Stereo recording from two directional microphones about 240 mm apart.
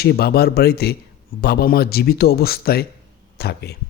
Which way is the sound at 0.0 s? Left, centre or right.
Left.